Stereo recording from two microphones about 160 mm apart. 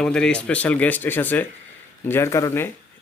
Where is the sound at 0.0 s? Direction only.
5° left (ahead or behind).